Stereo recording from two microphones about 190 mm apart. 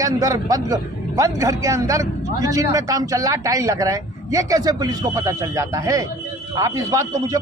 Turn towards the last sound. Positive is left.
turn(degrees=-20)  # may be behind; listen again after turning